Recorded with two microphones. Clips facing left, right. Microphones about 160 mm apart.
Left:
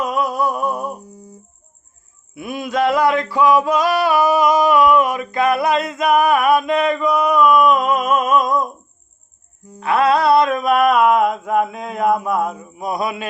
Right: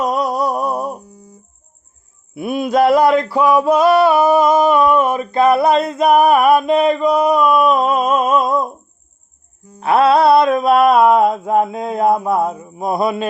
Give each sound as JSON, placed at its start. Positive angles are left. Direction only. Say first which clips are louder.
{"t": 0.0, "sound": "a sound", "louder": "right 2 dB", "side_deg": -35}
{"t": 2.3, "sound": "male singing", "louder": "right 6 dB", "side_deg": -30}
{"t": 9.8, "sound": "mantra", "louder": "right 4 dB", "side_deg": -30}